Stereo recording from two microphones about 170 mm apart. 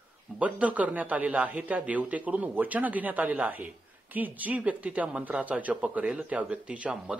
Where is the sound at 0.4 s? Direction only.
10° right (ahead or behind).